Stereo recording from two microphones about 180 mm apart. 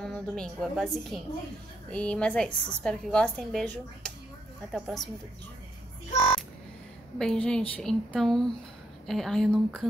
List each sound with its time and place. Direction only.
0.0 s a woman's voice: centre (ahead or behind)
6.1 s music: 20° left (ahead or behind)
7.2 s a woman's voice: 5° left (ahead or behind)